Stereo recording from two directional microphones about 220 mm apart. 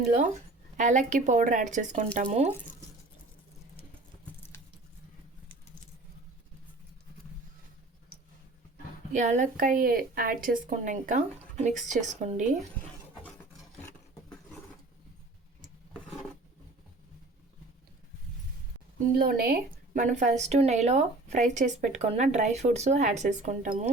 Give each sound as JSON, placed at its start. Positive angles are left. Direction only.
{"t": 0.0, "sound": "a woman's voice", "side_deg": -35}
{"t": 9.1, "sound": "a woman's voice", "side_deg": -30}
{"t": 19.1, "sound": "a woman's voice", "side_deg": -40}